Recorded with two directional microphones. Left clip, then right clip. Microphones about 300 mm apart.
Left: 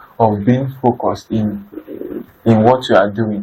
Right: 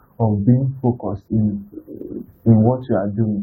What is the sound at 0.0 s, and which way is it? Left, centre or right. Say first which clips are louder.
Speech: left 8 dB; left.